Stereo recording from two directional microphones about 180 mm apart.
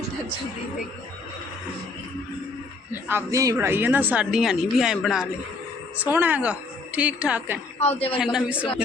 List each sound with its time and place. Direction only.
2.9 s speech: 10° right (ahead or behind)
7.8 s a man's voice: 35° left (ahead or behind)
8.2 s a man's voice: 5° right (ahead or behind)